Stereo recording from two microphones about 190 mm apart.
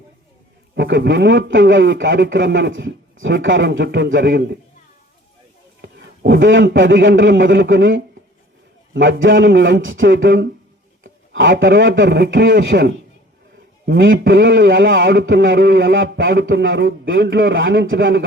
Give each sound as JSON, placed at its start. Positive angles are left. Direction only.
{"t": 0.8, "sound": "speech", "side_deg": -70}
{"t": 3.8, "sound": "a man's voice", "side_deg": -65}
{"t": 5.8, "sound": "a man's voice", "side_deg": -65}
{"t": 11.0, "sound": "a man's voice", "side_deg": -90}
{"t": 13.8, "sound": "a man's voice", "side_deg": -70}
{"t": 17.5, "sound": "a man's voice", "side_deg": -85}